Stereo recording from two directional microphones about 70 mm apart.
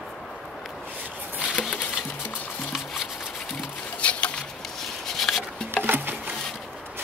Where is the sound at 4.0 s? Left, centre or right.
Centre.